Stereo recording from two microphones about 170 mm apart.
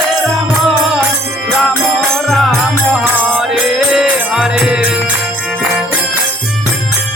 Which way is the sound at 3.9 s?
5° right (ahead or behind).